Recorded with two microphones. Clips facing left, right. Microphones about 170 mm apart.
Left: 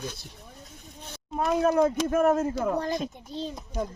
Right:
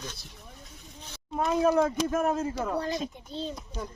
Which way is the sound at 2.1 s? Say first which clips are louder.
Left 5 dB; 55° left (ahead or behind).